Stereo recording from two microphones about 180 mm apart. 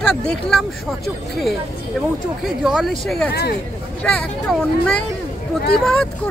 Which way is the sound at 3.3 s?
60° left (ahead or behind).